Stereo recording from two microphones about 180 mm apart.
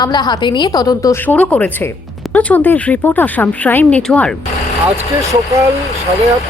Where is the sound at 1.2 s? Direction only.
10° left (ahead or behind).